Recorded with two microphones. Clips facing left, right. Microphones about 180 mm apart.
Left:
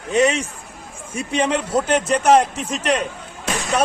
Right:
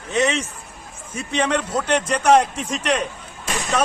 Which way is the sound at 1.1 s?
10° left (ahead or behind).